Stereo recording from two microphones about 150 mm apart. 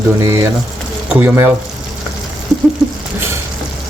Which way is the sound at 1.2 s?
15° right (ahead or behind).